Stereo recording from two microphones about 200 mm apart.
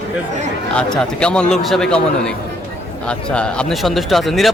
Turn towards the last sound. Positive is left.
turn(degrees=0)  # may be behind; listen again after turning